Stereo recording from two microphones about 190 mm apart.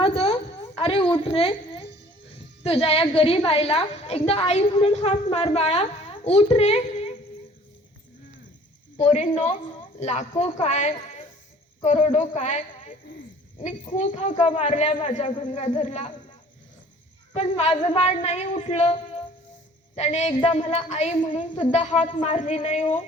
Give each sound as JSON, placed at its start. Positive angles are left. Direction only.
{"t": 0.0, "sound": "a sound", "side_deg": 30}
{"t": 2.6, "sound": "a woman's voice", "side_deg": 30}
{"t": 9.0, "sound": "a woman's voice", "side_deg": 35}
{"t": 17.3, "sound": "a woman's voice", "side_deg": 35}